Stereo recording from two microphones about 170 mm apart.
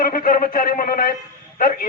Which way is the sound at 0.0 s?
55° left (ahead or behind).